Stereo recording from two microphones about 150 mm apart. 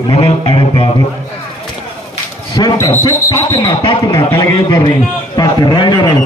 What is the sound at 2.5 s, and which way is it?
Speech, 25° left (ahead or behind).